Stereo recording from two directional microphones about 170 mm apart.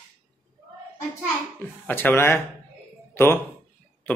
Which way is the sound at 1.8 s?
10° left (ahead or behind).